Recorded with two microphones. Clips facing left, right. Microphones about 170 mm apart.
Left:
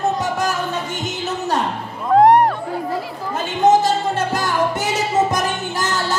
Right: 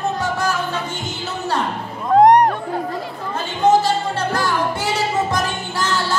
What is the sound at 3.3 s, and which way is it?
Music, 20° left (ahead or behind).